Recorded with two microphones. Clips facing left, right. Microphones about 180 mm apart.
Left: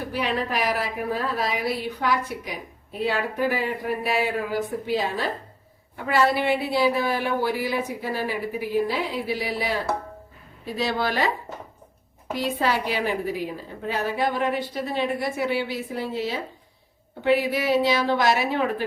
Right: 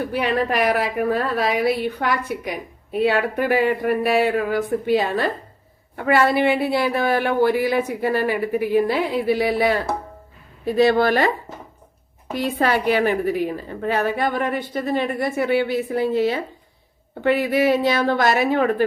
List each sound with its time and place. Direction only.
0.1 s speech: 60° right (ahead or behind)
10.8 s speech: 55° right (ahead or behind)
12.3 s speech: 55° right (ahead or behind)